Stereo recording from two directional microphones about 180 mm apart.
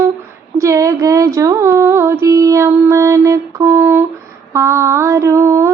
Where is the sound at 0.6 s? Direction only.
15° right (ahead or behind).